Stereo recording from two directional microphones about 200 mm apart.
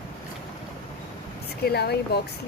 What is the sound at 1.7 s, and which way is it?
Speech, 55° left (ahead or behind).